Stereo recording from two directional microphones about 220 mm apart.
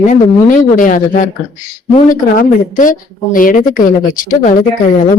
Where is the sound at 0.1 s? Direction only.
35° left (ahead or behind).